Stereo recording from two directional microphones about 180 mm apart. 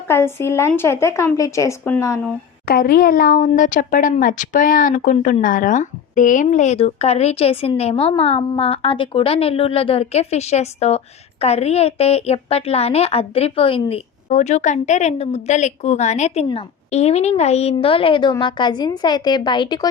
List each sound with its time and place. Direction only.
0.1 s a woman's voice: 15° left (ahead or behind)
2.6 s speech: 55° left (ahead or behind); by 14.0 s 30° left (ahead or behind)
14.3 s speech: 40° left (ahead or behind); by 19.9 s 25° left (ahead or behind)